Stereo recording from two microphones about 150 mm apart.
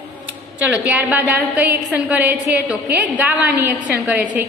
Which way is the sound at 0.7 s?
10° right (ahead or behind).